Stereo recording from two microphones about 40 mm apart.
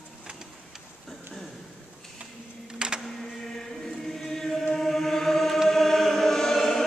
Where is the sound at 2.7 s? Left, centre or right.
Right.